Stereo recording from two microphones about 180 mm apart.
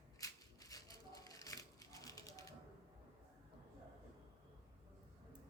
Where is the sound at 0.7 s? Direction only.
20° left (ahead or behind).